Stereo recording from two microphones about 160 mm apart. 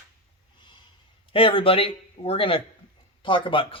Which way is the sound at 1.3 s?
35° left (ahead or behind).